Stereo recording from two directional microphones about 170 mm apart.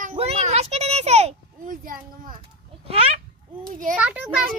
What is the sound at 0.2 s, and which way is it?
Music, 40° right (ahead or behind).